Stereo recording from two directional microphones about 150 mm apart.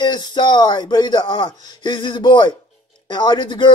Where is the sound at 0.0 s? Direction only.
30° left (ahead or behind).